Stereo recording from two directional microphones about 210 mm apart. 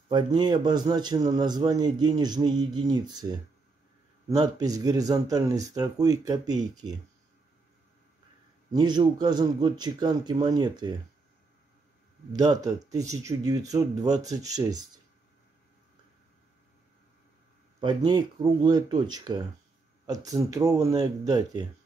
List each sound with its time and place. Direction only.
0.1 s a man's voice: 20° right (ahead or behind)
8.7 s a man's voice: 20° right (ahead or behind)
12.3 s speech: 15° right (ahead or behind)
17.7 s a man's voice: 20° right (ahead or behind)